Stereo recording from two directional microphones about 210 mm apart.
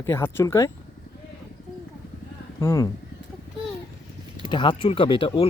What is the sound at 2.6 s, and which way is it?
Speech, 15° left (ahead or behind).